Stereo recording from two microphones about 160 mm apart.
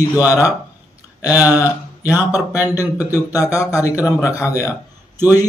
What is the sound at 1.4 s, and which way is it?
Speech, 10° right (ahead or behind).